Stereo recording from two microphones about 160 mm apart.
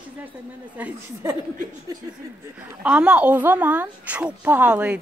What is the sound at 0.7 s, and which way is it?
Speech, 10° right (ahead or behind).